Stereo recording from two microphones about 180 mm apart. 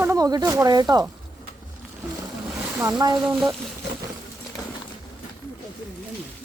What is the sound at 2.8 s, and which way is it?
Speech, 20° right (ahead or behind).